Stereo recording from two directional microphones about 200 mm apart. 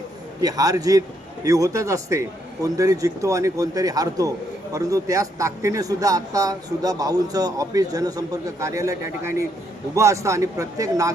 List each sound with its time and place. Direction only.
0.4 s a man's voice: 20° right (ahead or behind)